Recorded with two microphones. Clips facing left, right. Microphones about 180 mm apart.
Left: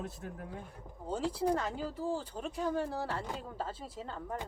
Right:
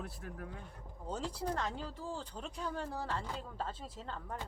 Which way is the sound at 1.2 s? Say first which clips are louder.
Left 6 dB; 10° left (ahead or behind).